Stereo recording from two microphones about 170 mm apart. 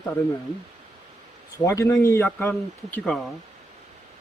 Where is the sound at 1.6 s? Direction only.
20° left (ahead or behind).